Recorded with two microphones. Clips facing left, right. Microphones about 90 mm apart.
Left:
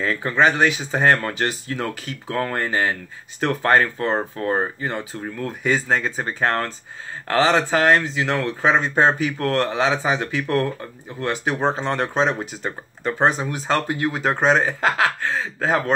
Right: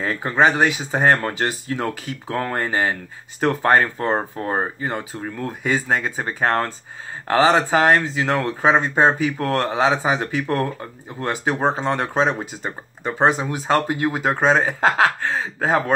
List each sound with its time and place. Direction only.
0.0 s speech: 25° right (ahead or behind)
4.5 s speech: 10° right (ahead or behind)